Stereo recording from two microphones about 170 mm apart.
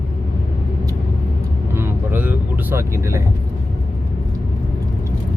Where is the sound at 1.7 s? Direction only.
10° right (ahead or behind).